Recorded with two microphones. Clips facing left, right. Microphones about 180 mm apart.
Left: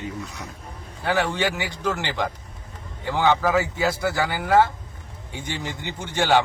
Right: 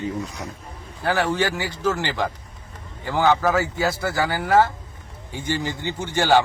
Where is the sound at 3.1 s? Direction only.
5° right (ahead or behind).